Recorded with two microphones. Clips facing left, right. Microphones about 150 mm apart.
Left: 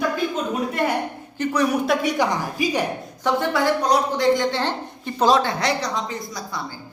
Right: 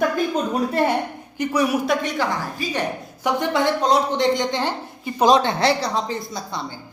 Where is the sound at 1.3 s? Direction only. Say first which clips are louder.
Even; 10° right (ahead or behind).